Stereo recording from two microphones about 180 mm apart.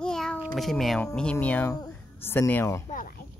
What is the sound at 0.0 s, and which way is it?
A child's voice, 5° left (ahead or behind).